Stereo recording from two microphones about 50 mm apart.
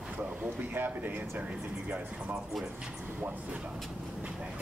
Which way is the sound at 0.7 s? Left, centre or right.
Right.